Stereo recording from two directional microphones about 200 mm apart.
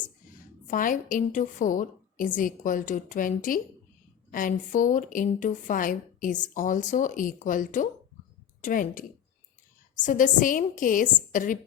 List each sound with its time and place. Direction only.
0.7 s a woman's voice: 40° left (ahead or behind)